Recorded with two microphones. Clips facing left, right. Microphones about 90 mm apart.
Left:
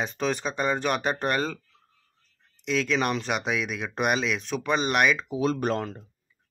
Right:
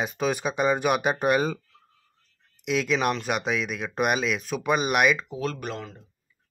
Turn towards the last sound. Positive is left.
turn(degrees=45)  # may be behind; listen again after turning